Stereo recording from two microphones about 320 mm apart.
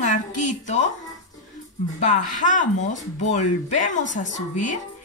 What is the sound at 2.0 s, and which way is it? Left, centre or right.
A woman's voice, left.